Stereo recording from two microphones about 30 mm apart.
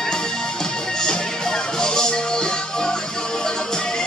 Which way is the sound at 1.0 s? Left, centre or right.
Left.